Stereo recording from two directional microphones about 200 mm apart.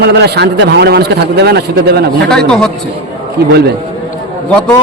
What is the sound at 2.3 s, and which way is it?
Speech, 5° left (ahead or behind).